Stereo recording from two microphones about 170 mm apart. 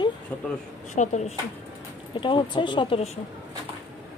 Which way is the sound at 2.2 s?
30° left (ahead or behind).